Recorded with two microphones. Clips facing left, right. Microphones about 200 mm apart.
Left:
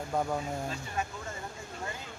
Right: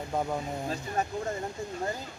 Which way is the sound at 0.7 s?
40° right (ahead or behind).